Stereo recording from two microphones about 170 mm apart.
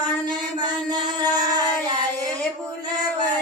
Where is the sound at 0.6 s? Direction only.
25° right (ahead or behind).